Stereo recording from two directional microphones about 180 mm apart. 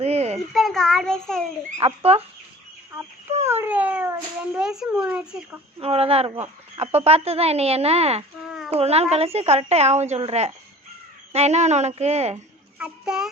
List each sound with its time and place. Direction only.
0.0 s a sound: 35° right (ahead or behind)
0.3 s a child's voice: centre (ahead or behind)
1.8 s a woman's voice: 35° right (ahead or behind)
3.4 s speech: 15° right (ahead or behind)
5.8 s a woman's voice: 35° right (ahead or behind)
8.4 s a sound: centre (ahead or behind)
8.7 s a woman's voice: 35° right (ahead or behind)
12.8 s speech: 5° right (ahead or behind)